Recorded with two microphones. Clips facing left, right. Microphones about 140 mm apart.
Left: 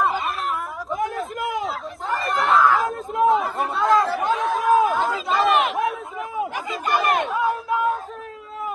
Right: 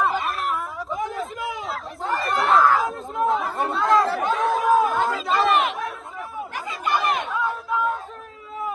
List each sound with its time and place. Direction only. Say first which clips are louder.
0.0 s chatter: even; centre (ahead or behind)
6.8 s chatter: left 2 dB; 50° left (ahead or behind)
7.2 s crowd: left 3 dB; centre (ahead or behind)